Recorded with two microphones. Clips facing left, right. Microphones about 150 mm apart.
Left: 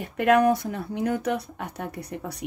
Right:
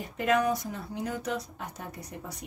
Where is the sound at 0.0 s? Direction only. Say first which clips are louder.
Left 7 dB; 60° left (ahead or behind).